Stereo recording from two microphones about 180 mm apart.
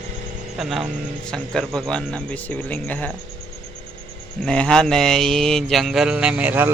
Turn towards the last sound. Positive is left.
turn(degrees=-10)  # may be behind; listen again after turning